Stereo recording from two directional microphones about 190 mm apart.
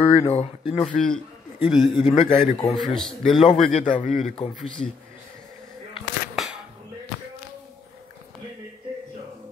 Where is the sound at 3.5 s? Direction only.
35° left (ahead or behind).